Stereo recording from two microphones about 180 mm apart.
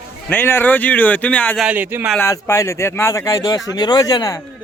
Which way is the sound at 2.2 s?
15° left (ahead or behind).